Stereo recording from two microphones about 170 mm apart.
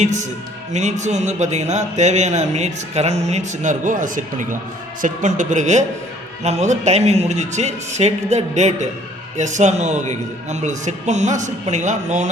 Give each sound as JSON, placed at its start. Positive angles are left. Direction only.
{"t": 0.0, "sound": "a man's voice", "side_deg": -45}